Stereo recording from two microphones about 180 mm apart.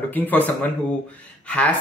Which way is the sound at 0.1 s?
10° left (ahead or behind).